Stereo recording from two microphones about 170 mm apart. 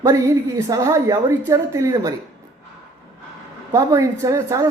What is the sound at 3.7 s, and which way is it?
Speech, 20° right (ahead or behind).